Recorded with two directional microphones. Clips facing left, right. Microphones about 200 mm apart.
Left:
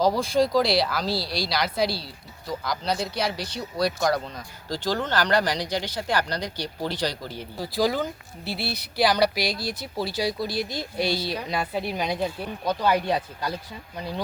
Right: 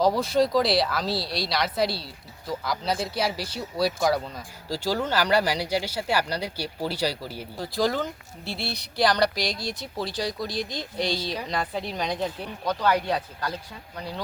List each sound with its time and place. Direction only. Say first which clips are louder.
0.0 s speech: even; centre (ahead or behind)
7.6 s speech: left 1 dB; 5° left (ahead or behind)